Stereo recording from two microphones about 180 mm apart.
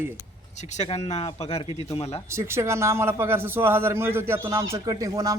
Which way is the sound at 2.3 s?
15° right (ahead or behind).